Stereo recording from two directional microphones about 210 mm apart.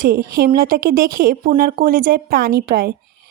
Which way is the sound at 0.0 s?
45° right (ahead or behind).